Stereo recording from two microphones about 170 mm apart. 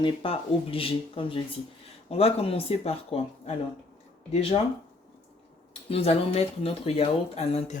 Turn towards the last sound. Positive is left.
turn(degrees=35)  # may be behind; listen again after turning